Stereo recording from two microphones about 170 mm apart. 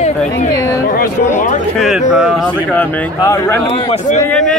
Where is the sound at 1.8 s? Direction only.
5° right (ahead or behind).